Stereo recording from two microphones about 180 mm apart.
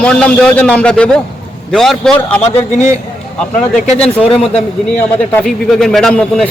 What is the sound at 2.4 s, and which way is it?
Speech, 40° left (ahead or behind).